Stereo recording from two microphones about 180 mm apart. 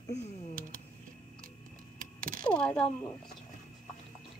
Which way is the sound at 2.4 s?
5° left (ahead or behind).